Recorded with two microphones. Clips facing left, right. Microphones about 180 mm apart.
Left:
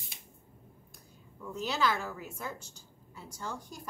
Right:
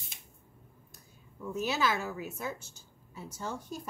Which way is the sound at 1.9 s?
20° right (ahead or behind).